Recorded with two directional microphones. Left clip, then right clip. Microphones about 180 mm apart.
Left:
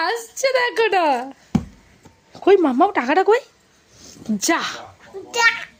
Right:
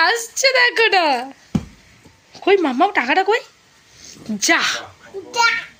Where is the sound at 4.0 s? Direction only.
35° left (ahead or behind).